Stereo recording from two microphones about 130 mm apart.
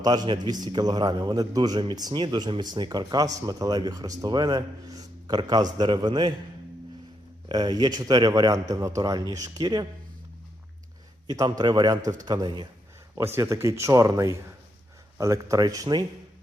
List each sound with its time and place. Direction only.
0.0 s a man's voice: 30° right (ahead or behind)
7.4 s a man's voice: 35° right (ahead or behind)
11.3 s a man's voice: 30° right (ahead or behind)
13.1 s speech: 20° right (ahead or behind)